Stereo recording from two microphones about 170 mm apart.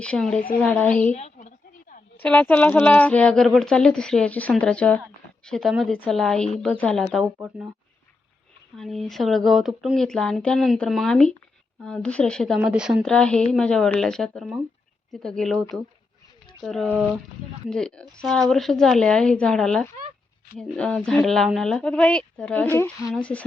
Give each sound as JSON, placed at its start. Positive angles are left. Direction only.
{"t": 0.0, "sound": "speech", "side_deg": 5}
{"t": 1.1, "sound": "a sound", "side_deg": 45}
{"t": 2.1, "sound": "speech", "side_deg": 10}
{"t": 7.3, "sound": "speech", "side_deg": -10}
{"t": 8.7, "sound": "speech", "side_deg": 0}
{"t": 16.6, "sound": "speech", "side_deg": 5}